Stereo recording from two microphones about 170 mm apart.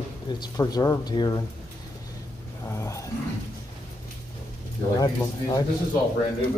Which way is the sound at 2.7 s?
15° left (ahead or behind).